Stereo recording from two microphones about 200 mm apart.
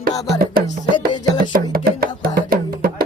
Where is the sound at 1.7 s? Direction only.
50° right (ahead or behind).